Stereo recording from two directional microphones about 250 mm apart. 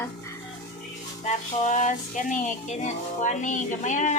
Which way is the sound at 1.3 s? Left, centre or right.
Left.